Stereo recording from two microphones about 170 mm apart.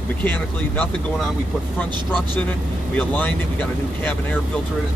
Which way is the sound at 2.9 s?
10° left (ahead or behind).